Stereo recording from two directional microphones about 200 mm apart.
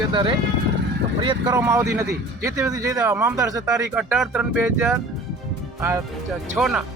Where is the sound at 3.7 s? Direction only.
5° right (ahead or behind).